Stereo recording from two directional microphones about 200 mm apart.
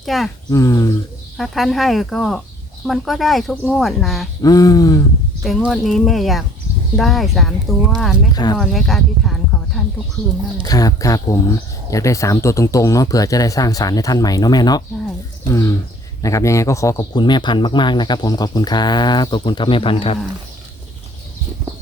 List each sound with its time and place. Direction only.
0.0 s speech: centre (ahead or behind)
0.5 s speech: 15° left (ahead or behind)
1.4 s speech: centre (ahead or behind)
4.4 s speech: 20° left (ahead or behind)
5.4 s speech: centre (ahead or behind)
8.3 s speech: 20° left (ahead or behind)
8.5 s speech: centre (ahead or behind)
10.6 s speech: 20° left (ahead or behind)
16.2 s speech: 15° left (ahead or behind)